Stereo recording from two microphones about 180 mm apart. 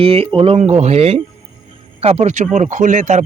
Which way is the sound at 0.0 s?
30° right (ahead or behind).